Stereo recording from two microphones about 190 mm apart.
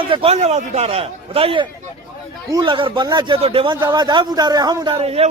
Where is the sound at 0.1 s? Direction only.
30° right (ahead or behind).